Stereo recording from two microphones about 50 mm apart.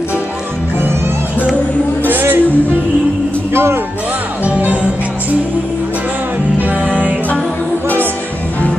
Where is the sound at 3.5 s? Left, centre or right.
Right.